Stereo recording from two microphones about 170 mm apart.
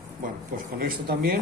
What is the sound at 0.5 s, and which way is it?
Speech, 60° right (ahead or behind).